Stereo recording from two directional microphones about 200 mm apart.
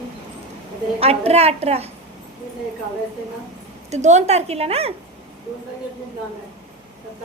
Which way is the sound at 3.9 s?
35° right (ahead or behind).